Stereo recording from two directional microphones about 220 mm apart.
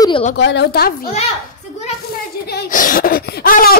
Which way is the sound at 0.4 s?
50° left (ahead or behind).